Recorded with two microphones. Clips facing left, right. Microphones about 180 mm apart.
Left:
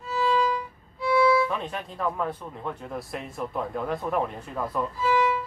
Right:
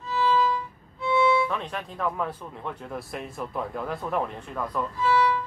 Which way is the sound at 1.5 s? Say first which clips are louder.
Even; centre (ahead or behind).